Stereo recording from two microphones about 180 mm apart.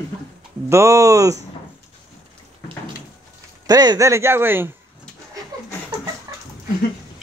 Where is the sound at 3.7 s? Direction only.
20° right (ahead or behind).